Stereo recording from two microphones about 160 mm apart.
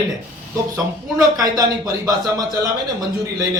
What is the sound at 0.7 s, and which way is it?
Speech, 20° right (ahead or behind).